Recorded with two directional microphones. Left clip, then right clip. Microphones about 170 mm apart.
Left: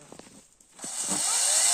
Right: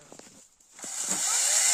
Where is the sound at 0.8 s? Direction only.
10° right (ahead or behind).